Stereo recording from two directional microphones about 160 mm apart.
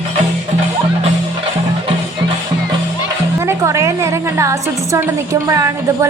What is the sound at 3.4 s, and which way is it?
A woman's voice, 20° right (ahead or behind).